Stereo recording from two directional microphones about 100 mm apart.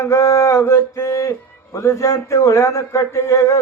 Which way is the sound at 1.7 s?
30° left (ahead or behind).